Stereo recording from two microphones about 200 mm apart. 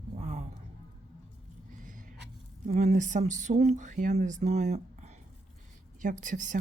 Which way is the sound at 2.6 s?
35° right (ahead or behind).